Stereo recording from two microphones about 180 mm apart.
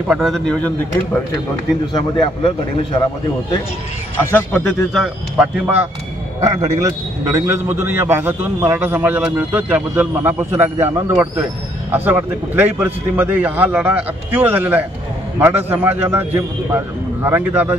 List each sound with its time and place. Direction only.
0.1 s a man's voice: centre (ahead or behind)
2.0 s a man's voice: 25° left (ahead or behind)
4.2 s a man's voice: 10° left (ahead or behind)
5.4 s a man's voice: 10° right (ahead or behind)